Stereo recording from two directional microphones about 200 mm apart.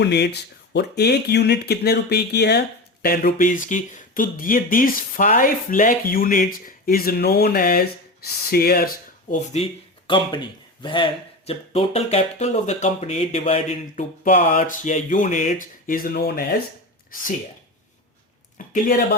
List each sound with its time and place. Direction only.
0.0 s speech: 55° left (ahead or behind)
9.3 s speech: 35° left (ahead or behind); by 16.6 s 50° left (ahead or behind)
18.5 s speech: 45° left (ahead or behind)